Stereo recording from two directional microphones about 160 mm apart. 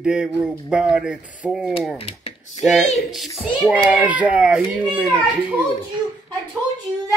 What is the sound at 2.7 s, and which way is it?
Speech, 50° left (ahead or behind).